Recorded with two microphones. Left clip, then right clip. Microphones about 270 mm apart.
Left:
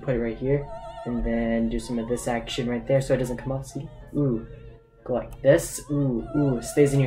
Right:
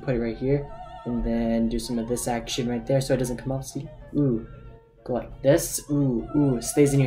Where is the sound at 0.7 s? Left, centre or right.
Left.